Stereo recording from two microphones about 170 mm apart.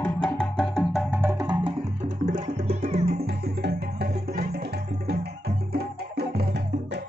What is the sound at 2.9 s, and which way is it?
Music, 40° right (ahead or behind).